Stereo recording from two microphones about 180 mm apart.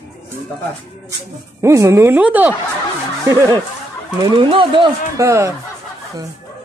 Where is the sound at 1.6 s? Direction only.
15° right (ahead or behind).